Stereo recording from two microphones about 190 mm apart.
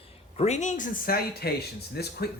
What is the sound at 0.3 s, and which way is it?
Speech, 35° left (ahead or behind).